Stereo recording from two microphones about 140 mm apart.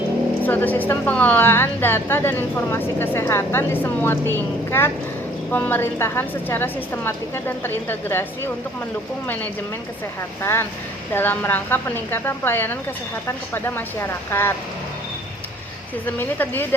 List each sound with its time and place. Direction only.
0.4 s a woman's voice: 10° left (ahead or behind)
9.2 s a woman's voice: 10° left (ahead or behind)
16.0 s a woman's voice: 15° left (ahead or behind)